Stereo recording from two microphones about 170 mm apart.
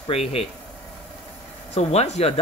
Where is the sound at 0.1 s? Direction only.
35° left (ahead or behind).